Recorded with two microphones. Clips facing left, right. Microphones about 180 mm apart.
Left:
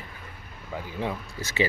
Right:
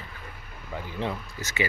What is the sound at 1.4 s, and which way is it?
Speech, 30° left (ahead or behind).